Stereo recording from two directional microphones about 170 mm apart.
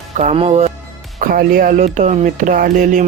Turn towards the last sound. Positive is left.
turn(degrees=-50)  # may be behind; listen again after turning